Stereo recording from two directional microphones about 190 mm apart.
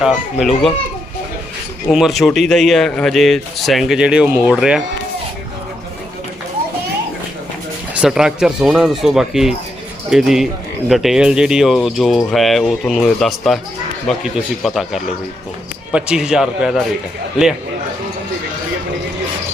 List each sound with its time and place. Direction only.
0.0 s speech: centre (ahead or behind)
1.9 s speech: centre (ahead or behind)
7.9 s speech: 5° right (ahead or behind)